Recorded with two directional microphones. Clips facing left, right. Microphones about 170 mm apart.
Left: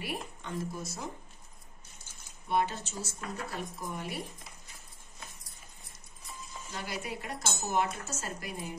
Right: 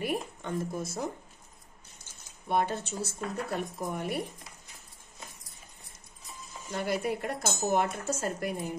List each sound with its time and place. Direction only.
0.0 s speech: 50° right (ahead or behind)
2.4 s speech: 50° right (ahead or behind)
6.7 s speech: 55° right (ahead or behind)